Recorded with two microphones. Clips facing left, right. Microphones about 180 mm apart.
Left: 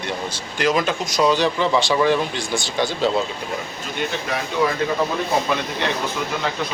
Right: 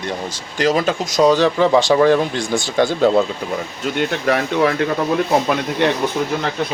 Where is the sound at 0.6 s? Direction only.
40° right (ahead or behind).